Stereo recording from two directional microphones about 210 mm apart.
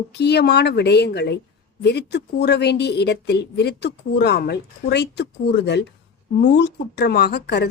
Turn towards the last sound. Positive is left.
turn(degrees=50)  # may be behind; listen again after turning